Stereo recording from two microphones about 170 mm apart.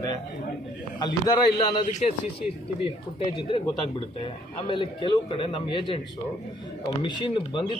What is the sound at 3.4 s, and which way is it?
Speech, 30° left (ahead or behind).